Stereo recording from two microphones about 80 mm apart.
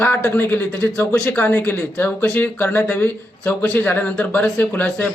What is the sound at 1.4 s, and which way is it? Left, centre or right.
A man's voice, left.